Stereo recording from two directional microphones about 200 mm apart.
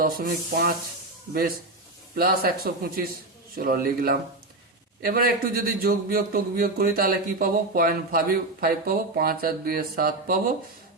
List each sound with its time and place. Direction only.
0.0 s a man's voice: 45° right (ahead or behind)